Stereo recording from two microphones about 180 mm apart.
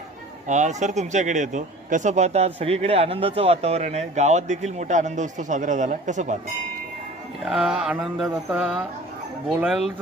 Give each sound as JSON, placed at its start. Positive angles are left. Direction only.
{"t": 0.4, "sound": "speech", "side_deg": -40}
{"t": 7.4, "sound": "speech", "side_deg": -5}